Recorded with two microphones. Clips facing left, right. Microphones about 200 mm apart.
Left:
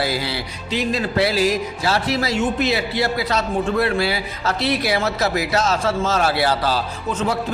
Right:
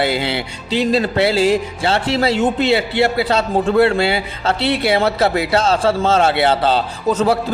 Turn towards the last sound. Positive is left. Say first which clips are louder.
# right 7 dB
turn(degrees=-40)  # may be behind; listen again after turning